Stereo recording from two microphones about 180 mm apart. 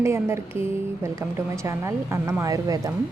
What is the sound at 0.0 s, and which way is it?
Speech, 15° right (ahead or behind).